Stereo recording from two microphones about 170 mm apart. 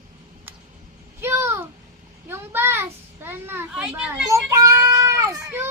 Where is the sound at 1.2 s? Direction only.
15° right (ahead or behind).